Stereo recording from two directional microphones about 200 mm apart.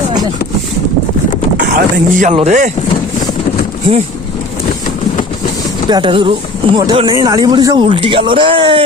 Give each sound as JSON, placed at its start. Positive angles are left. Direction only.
{"t": 1.5, "sound": "a sound", "side_deg": -45}
{"t": 2.3, "sound": "speech", "side_deg": -35}
{"t": 5.9, "sound": "speech", "side_deg": -25}